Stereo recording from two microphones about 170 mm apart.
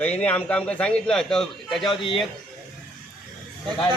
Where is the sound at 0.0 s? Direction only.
10° left (ahead or behind).